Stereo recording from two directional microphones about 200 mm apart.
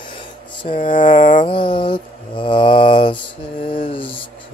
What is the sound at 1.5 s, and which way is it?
Mantra, 25° left (ahead or behind).